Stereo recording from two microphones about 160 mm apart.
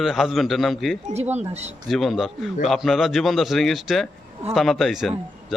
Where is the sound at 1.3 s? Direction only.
40° right (ahead or behind).